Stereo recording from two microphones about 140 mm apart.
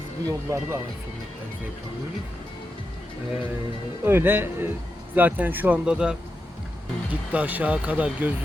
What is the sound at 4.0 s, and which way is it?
Speech, 15° right (ahead or behind).